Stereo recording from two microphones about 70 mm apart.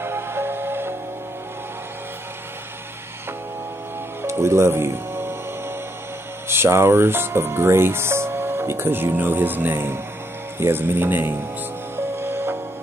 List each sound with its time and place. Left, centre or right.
0.0 s music: right
4.2 s music: right
6.5 s speech: right
12.2 s music: right